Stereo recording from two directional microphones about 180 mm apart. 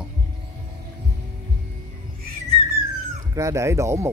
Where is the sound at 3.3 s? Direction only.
15° right (ahead or behind).